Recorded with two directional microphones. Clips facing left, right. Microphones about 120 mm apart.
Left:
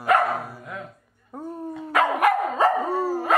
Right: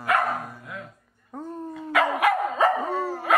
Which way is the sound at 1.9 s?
45° left (ahead or behind).